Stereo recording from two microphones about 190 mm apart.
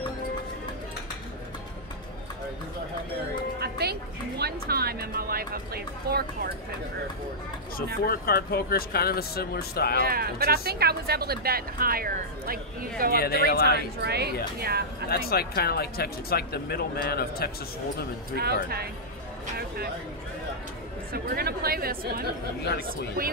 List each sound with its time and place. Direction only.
3.5 s a woman's voice: 55° right (ahead or behind)
8.1 s speech: 50° left (ahead or behind)
10.0 s speech: 50° right (ahead or behind)
13.2 s speech: 55° left (ahead or behind)
13.7 s a woman's voice: 60° right (ahead or behind)
15.0 s speech: 55° left (ahead or behind)
18.4 s a woman's voice: 55° right (ahead or behind)
21.1 s speech: 55° right (ahead or behind)